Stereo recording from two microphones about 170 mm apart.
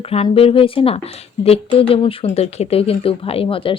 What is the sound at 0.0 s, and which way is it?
Speech, 35° left (ahead or behind).